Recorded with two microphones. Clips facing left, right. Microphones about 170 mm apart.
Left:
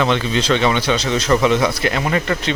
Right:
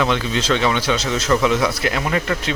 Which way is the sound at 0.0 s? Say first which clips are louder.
Left 2 dB; centre (ahead or behind).